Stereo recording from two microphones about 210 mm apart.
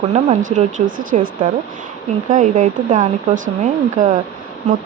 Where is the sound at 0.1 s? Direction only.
35° right (ahead or behind).